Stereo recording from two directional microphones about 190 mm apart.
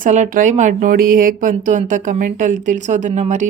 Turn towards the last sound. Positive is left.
turn(degrees=-40)  # may be behind; listen again after turning